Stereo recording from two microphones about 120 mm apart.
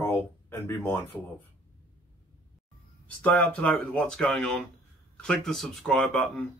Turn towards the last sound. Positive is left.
turn(degrees=5)  # may be behind; listen again after turning